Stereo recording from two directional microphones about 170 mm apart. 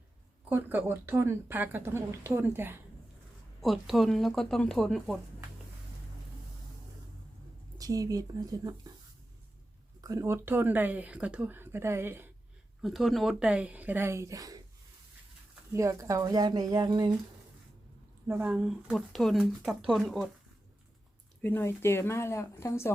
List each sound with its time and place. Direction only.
0.5 s speech: 15° right (ahead or behind)
3.6 s speech: centre (ahead or behind)
7.8 s speech: 20° right (ahead or behind)
10.0 s speech: 20° right (ahead or behind)
12.8 s speech: centre (ahead or behind); by 14.6 s 20° right (ahead or behind)
15.7 s speech: 20° right (ahead or behind)
18.3 s speech: 10° right (ahead or behind)
21.4 s speech: 15° left (ahead or behind)